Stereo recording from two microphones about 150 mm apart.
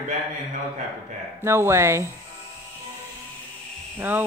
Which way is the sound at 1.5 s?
15° right (ahead or behind).